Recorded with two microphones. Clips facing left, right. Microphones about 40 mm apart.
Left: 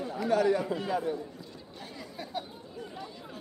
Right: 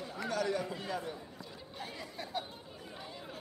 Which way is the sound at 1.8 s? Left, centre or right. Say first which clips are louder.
Left 1 dB; centre.